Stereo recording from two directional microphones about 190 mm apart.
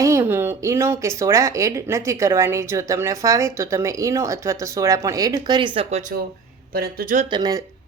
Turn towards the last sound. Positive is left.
turn(degrees=-20)  # may be behind; listen again after turning